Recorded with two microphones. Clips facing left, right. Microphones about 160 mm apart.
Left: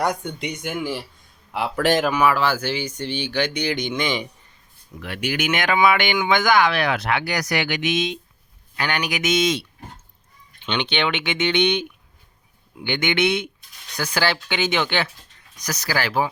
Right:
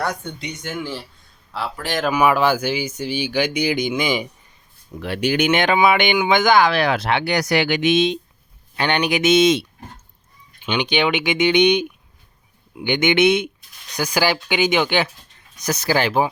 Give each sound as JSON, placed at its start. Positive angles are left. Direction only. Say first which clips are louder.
{"t": 0.0, "sound": "speech", "louder": "left 2 dB", "side_deg": 15}
{"t": 2.2, "sound": "speech", "louder": "right 3 dB", "side_deg": -15}
{"t": 4.9, "sound": "speech", "louder": "right 6 dB", "side_deg": -30}
{"t": 10.6, "sound": "speech", "louder": "right 4 dB", "side_deg": -10}
{"t": 15.5, "sound": "speech", "louder": "right 6 dB", "side_deg": -25}